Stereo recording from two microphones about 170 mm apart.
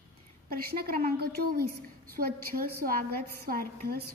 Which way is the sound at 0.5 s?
65° right (ahead or behind).